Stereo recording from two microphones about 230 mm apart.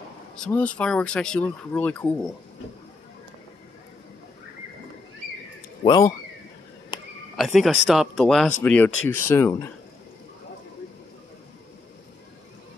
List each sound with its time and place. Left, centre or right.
0.4 s speech: centre
5.9 s speech: centre
7.3 s speech: centre